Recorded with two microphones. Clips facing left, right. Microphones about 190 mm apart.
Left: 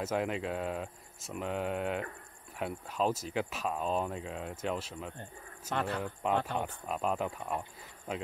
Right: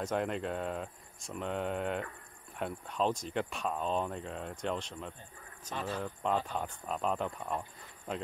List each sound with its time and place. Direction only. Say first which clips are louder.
0.0 s speech: left 1 dB; 5° left (ahead or behind)
5.8 s speech: left 3 dB; 65° left (ahead or behind)
6.6 s speech: left 1 dB; 5° left (ahead or behind)